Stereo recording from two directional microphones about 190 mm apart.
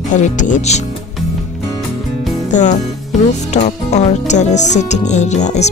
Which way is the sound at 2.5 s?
40° left (ahead or behind).